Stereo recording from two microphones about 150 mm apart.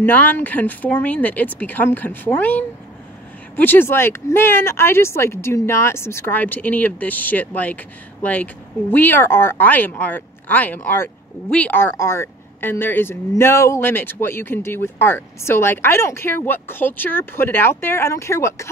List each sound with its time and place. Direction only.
0.0 s speech: 10° left (ahead or behind)